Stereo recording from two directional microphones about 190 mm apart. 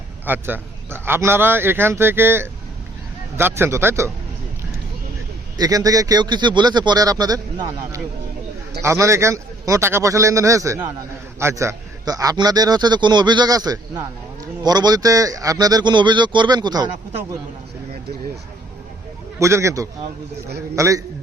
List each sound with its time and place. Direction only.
0.3 s a man's voice: 10° right (ahead or behind)
5.5 s a man's voice: 20° right (ahead or behind)
19.4 s a man's voice: 15° right (ahead or behind)